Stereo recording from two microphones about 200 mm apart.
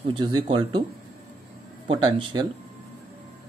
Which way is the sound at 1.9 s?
25° right (ahead or behind).